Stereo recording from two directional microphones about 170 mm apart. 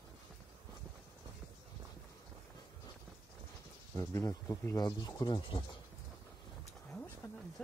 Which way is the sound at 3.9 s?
15° left (ahead or behind).